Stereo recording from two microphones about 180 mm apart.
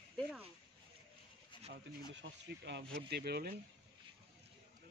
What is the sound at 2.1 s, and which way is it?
Speech, 75° right (ahead or behind).